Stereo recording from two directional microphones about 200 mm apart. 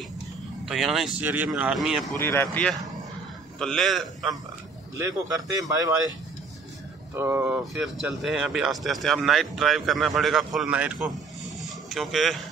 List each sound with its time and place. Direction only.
0.7 s speech: centre (ahead or behind)
2.1 s speech: 10° left (ahead or behind)
5.6 s speech: 15° right (ahead or behind)
7.2 s speech: 10° right (ahead or behind)